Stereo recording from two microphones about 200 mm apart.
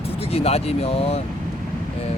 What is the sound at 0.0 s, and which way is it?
Speech, 30° left (ahead or behind).